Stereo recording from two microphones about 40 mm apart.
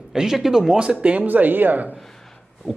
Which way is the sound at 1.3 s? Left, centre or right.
Right.